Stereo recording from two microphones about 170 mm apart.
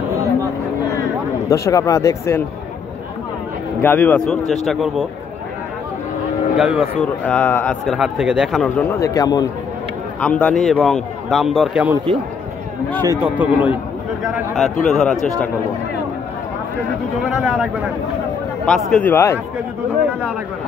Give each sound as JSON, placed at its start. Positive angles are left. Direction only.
{"t": 1.5, "sound": "speech", "side_deg": 20}
{"t": 3.8, "sound": "a man's voice", "side_deg": 10}
{"t": 6.5, "sound": "a man's voice", "side_deg": 0}
{"t": 8.9, "sound": "speech", "side_deg": 20}
{"t": 10.2, "sound": "a man's voice", "side_deg": 10}
{"t": 13.2, "sound": "a man's voice", "side_deg": -10}
{"t": 17.2, "sound": "a man's voice", "side_deg": -5}
{"t": 18.7, "sound": "speech", "side_deg": 5}